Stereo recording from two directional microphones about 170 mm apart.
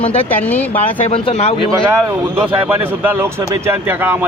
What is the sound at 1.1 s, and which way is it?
Speech, 35° left (ahead or behind).